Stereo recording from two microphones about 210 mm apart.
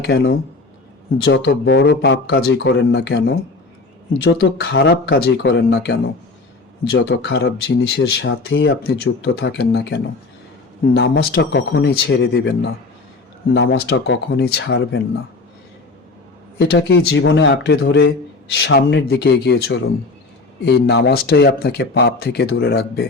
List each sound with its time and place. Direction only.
0.0 s a man's voice: 50° left (ahead or behind)
16.6 s a man's voice: 55° left (ahead or behind)